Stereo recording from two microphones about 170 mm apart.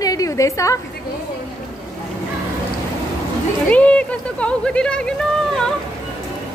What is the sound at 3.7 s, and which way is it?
Speech, 5° left (ahead or behind).